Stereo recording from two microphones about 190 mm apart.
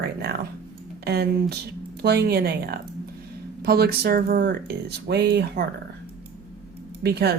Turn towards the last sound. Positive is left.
turn(degrees=-60)  # may be behind; listen again after turning